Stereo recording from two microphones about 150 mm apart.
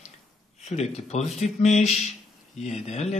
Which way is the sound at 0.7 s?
45° left (ahead or behind).